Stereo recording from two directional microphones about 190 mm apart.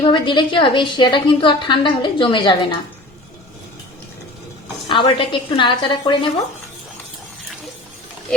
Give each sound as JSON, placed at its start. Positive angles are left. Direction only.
{"t": 0.0, "sound": "a woman's voice", "side_deg": 25}
{"t": 4.9, "sound": "a woman's voice", "side_deg": 25}